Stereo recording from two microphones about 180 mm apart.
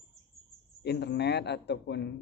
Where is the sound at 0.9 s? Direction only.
70° left (ahead or behind).